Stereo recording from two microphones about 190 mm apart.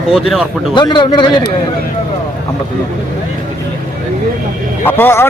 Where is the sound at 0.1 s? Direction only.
Centre (ahead or behind).